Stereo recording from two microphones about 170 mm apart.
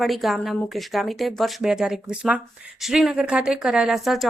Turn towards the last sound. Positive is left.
turn(degrees=0)  # may be behind; listen again after turning